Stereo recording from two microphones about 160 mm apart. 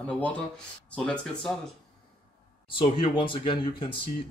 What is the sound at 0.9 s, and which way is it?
Speech, 5° left (ahead or behind).